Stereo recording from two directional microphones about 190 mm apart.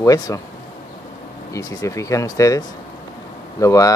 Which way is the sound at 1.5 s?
15° left (ahead or behind).